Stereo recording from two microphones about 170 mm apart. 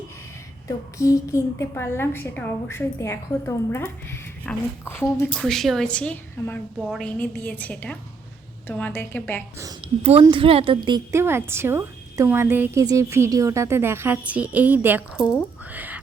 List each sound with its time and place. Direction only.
0.9 s a woman's voice: 20° left (ahead or behind)
10.0 s a woman's voice: 35° right (ahead or behind)
11.1 s a woman's voice: 15° right (ahead or behind)
15.2 s speech: 20° left (ahead or behind)
15.7 s speech: 10° right (ahead or behind)